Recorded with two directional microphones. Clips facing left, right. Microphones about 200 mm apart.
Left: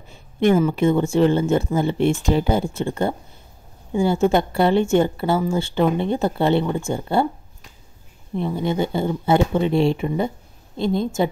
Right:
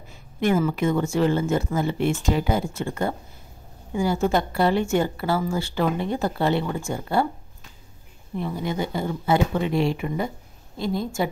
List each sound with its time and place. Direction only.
0.1 s a woman's voice: 25° left (ahead or behind)
8.4 s a woman's voice: 25° left (ahead or behind)